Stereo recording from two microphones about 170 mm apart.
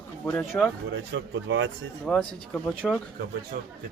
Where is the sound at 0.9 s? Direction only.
90° right.